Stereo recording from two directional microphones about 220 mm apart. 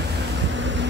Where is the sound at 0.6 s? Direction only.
55° right (ahead or behind).